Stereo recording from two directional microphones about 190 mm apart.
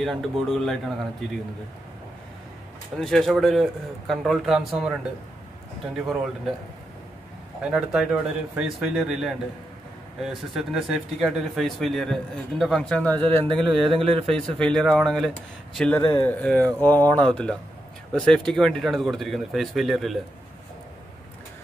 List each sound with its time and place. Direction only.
0.0 s speech: centre (ahead or behind)
3.0 s speech: centre (ahead or behind)
5.9 s speech: centre (ahead or behind)
7.6 s speech: 5° right (ahead or behind)
13.8 s speech: 30° right (ahead or behind)
14.3 s speech: 5° left (ahead or behind)
16.0 s speech: 15° left (ahead or behind); by 20.2 s centre (ahead or behind)